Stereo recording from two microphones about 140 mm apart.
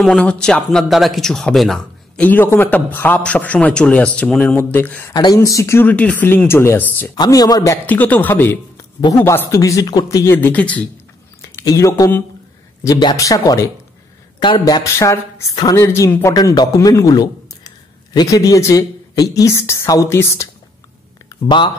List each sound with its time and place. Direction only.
0.0 s speech: 5° left (ahead or behind)
5.1 s speech: 25° left (ahead or behind)
7.8 s speech: 10° left (ahead or behind)
11.4 s a man's voice: 20° left (ahead or behind)
21.5 s speech: 35° left (ahead or behind)